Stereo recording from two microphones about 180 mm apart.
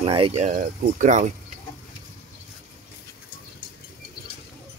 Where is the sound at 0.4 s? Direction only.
45° right (ahead or behind).